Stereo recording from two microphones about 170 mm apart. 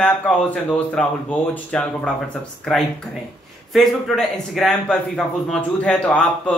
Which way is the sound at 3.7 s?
Centre (ahead or behind).